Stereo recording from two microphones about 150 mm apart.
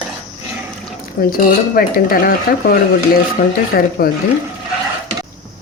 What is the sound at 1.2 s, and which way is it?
Speech, 70° left (ahead or behind).